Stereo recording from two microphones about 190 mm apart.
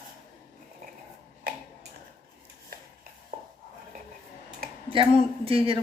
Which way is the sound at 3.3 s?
45° right (ahead or behind).